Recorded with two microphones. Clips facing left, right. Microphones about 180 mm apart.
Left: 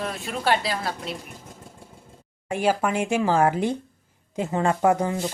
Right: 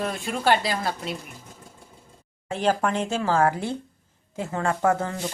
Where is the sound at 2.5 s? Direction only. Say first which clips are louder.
Left 1 dB; 10° left (ahead or behind).